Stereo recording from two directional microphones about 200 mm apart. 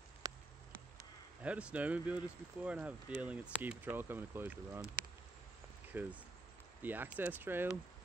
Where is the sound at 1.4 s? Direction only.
5° right (ahead or behind).